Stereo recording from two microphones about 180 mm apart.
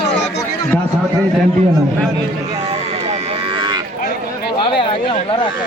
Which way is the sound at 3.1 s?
30° right (ahead or behind).